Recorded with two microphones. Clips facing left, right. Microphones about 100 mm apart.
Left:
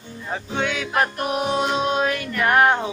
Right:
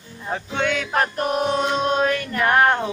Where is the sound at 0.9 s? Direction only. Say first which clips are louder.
Right 1 dB; 35° right (ahead or behind).